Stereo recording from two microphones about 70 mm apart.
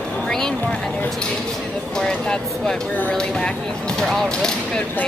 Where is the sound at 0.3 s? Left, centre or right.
Centre.